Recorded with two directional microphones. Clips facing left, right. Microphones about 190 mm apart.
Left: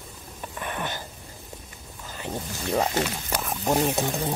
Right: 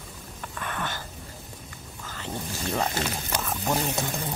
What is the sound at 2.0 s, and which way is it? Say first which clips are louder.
Wild animals: left 2 dB; 15° left (ahead or behind).